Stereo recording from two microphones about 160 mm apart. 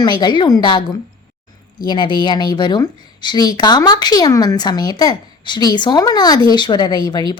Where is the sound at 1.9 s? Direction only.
30° left (ahead or behind).